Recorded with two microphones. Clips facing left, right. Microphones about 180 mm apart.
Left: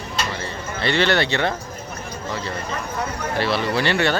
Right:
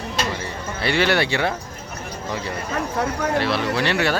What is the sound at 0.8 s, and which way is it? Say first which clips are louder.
Speech: even; 10° right (ahead or behind).